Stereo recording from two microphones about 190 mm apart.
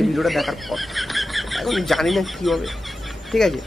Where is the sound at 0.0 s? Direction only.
Centre (ahead or behind).